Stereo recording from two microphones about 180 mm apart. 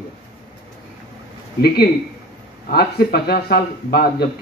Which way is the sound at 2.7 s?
60° left (ahead or behind).